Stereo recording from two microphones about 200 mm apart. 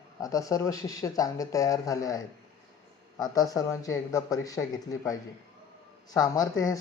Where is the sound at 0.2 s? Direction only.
15° left (ahead or behind).